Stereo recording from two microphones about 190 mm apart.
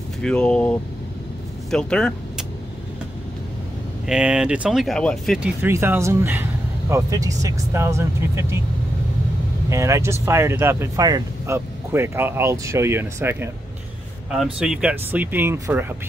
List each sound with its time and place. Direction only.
0.2 s speech: 5° left (ahead or behind)
4.1 s speech: 5° right (ahead or behind)
5.6 s speech: 10° right (ahead or behind)
9.7 s speech: 15° right (ahead or behind)